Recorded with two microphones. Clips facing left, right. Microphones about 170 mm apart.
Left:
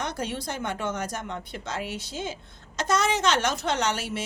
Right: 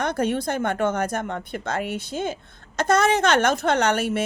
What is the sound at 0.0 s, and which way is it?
A woman's voice, 55° right (ahead or behind).